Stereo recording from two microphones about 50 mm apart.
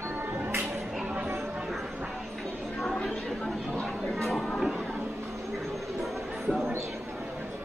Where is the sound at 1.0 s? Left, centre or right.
Right.